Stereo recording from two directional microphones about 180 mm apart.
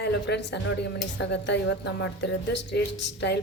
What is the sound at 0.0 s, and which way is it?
Speech, 70° left (ahead or behind).